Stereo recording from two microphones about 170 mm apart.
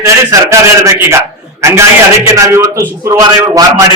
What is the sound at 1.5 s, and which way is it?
A man's voice, 15° right (ahead or behind).